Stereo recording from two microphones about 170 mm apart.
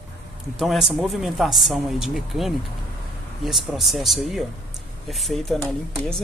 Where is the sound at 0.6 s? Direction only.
Centre (ahead or behind).